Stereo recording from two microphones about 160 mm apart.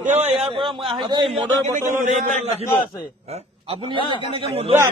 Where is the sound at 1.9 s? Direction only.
50° right (ahead or behind).